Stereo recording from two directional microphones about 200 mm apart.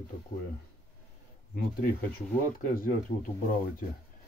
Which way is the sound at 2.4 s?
45° left (ahead or behind).